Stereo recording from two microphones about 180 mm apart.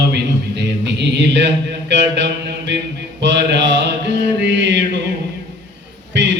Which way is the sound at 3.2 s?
80° right.